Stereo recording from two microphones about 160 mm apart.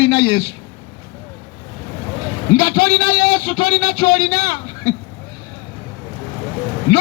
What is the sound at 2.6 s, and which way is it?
A man's voice, 30° left (ahead or behind).